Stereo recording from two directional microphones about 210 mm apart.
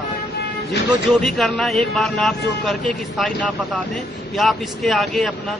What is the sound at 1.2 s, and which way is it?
A man's voice, centre (ahead or behind).